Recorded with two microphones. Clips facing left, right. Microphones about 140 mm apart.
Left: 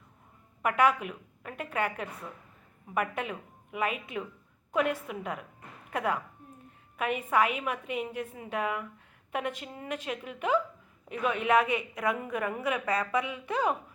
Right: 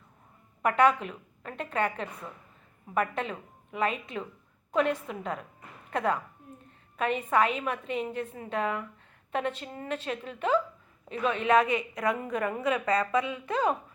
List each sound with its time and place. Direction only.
0.6 s a woman's voice: 10° left (ahead or behind)
12.9 s a woman's voice: 25° right (ahead or behind)
13.4 s a woman's voice: 10° left (ahead or behind)